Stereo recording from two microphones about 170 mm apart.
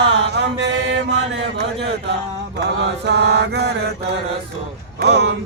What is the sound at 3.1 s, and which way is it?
Chant, 85° right.